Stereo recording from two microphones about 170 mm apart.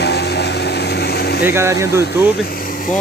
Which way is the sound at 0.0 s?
75° left (ahead or behind).